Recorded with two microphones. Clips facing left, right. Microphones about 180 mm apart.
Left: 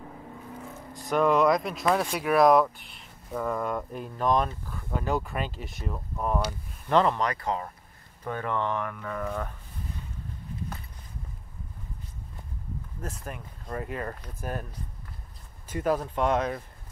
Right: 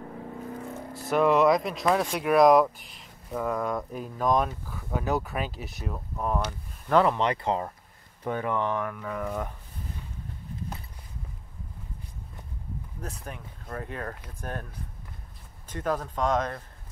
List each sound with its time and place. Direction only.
0.9 s speech: 5° right (ahead or behind)
7.2 s speech: 25° right (ahead or behind)
8.2 s speech: 15° right (ahead or behind)
13.0 s speech: centre (ahead or behind)
15.7 s speech: 10° left (ahead or behind)